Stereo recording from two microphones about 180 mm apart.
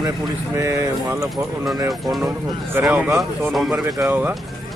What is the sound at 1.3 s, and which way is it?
A man's voice, centre (ahead or behind).